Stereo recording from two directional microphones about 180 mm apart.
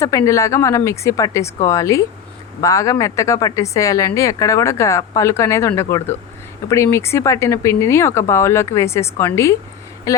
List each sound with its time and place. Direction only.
0.0 s speech: 20° left (ahead or behind)